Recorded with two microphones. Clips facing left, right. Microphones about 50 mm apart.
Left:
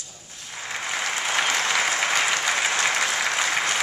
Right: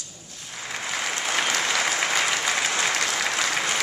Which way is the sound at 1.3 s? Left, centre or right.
Centre.